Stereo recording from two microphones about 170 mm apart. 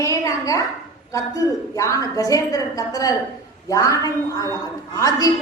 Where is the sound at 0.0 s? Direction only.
20° left (ahead or behind).